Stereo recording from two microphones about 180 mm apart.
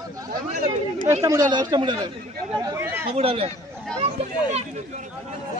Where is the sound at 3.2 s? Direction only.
35° right (ahead or behind).